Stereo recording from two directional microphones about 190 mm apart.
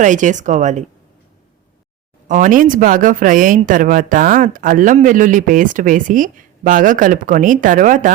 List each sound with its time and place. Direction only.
0.0 s speech: 40° right (ahead or behind)
2.2 s speech: 45° right (ahead or behind)